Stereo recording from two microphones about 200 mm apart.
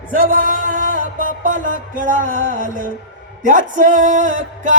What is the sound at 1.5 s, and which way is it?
Music, 40° right (ahead or behind).